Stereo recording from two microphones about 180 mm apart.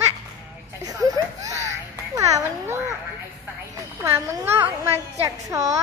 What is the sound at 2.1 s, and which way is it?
Music, 20° right (ahead or behind).